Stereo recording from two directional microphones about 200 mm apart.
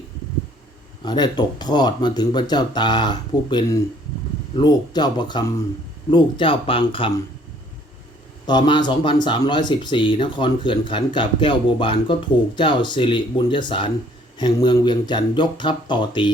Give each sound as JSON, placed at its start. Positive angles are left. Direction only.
{"t": 1.0, "sound": "speech", "side_deg": 20}
{"t": 8.4, "sound": "speech", "side_deg": 25}